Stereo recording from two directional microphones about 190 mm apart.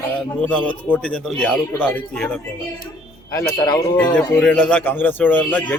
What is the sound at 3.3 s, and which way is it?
Speech, 20° left (ahead or behind).